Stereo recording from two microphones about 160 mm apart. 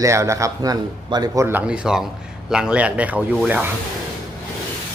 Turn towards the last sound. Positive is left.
turn(degrees=-5)  # may be behind; listen again after turning